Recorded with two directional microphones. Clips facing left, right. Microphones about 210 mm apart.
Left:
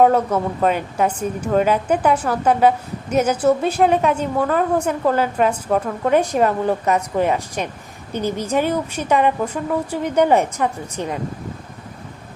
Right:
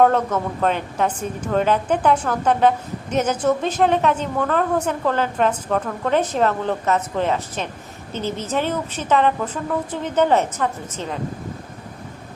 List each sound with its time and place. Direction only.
0.0 s a woman's voice: 10° left (ahead or behind)